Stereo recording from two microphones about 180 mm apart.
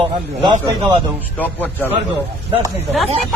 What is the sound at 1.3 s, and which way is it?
Speech, 10° left (ahead or behind).